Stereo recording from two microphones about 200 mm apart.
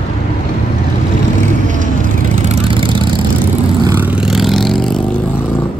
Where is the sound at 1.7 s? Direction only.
40° right (ahead or behind); by 3.2 s 25° right (ahead or behind).